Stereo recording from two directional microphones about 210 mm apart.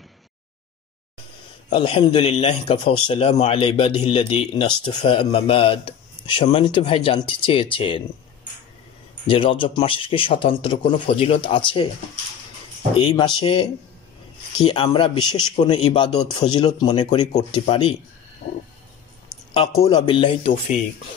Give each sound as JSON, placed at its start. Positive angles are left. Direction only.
{"t": 1.7, "sound": "speech", "side_deg": 25}
{"t": 9.3, "sound": "speech", "side_deg": 25}
{"t": 12.9, "sound": "speech", "side_deg": 25}
{"t": 19.3, "sound": "a sound", "side_deg": 0}
{"t": 19.8, "sound": "speech", "side_deg": 20}